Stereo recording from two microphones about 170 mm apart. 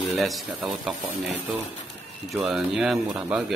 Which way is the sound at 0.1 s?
Centre (ahead or behind).